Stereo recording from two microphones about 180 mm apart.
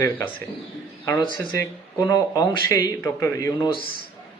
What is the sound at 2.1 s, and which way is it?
Speech, 20° left (ahead or behind).